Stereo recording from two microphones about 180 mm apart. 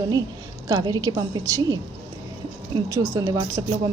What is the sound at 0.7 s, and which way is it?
Speech, 20° right (ahead or behind).